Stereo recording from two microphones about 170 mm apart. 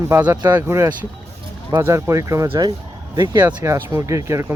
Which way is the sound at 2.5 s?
30° right (ahead or behind).